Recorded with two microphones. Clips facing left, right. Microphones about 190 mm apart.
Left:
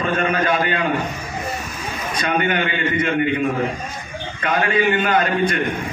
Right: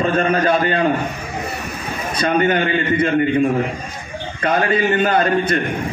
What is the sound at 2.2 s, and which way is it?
A man's voice, 35° right (ahead or behind).